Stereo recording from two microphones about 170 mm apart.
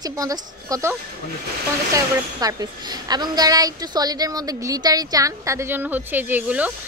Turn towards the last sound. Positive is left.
turn(degrees=-10)  # may be behind; listen again after turning